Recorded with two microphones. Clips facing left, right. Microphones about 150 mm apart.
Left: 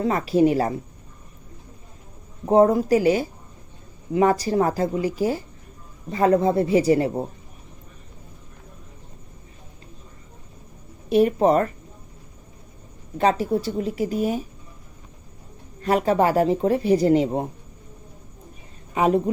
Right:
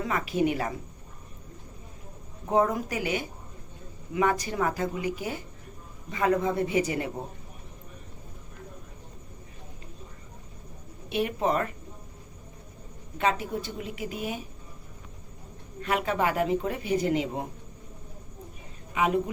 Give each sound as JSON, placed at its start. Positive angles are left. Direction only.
{"t": 0.0, "sound": "speech", "side_deg": 35}
{"t": 2.5, "sound": "speech", "side_deg": 35}
{"t": 11.1, "sound": "speech", "side_deg": 40}
{"t": 13.1, "sound": "speech", "side_deg": 35}
{"t": 15.8, "sound": "speech", "side_deg": 35}
{"t": 18.9, "sound": "speech", "side_deg": 35}